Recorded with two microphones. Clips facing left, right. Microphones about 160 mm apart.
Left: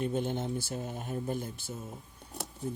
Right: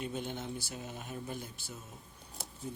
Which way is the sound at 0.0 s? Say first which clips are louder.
Left 7 dB; 50° left (ahead or behind).